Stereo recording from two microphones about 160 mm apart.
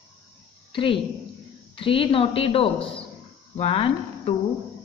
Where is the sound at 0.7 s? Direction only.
30° left (ahead or behind).